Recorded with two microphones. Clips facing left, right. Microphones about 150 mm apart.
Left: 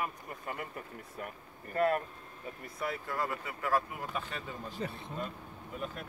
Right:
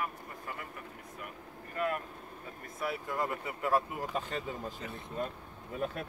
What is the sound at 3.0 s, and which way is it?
Speech, 20° right (ahead or behind).